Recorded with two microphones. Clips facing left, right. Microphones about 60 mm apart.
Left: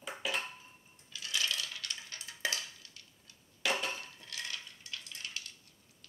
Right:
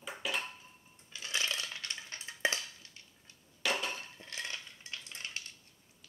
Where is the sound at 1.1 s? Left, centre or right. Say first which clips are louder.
Even; right.